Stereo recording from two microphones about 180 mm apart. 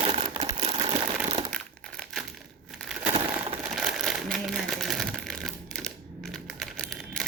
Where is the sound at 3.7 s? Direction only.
5° right (ahead or behind).